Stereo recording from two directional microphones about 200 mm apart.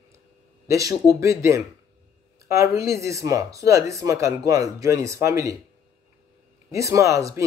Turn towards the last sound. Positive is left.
turn(degrees=-15)  # may be behind; listen again after turning